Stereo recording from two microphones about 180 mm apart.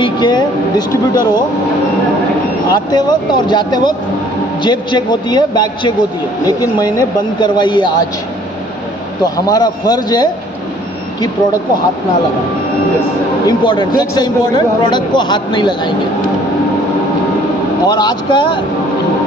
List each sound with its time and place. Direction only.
0.0 s speech: 25° left (ahead or behind)
2.7 s speech: 20° left (ahead or behind)
9.2 s speech: 20° left (ahead or behind)
13.5 s speech: 25° left (ahead or behind)
17.8 s speech: 25° left (ahead or behind)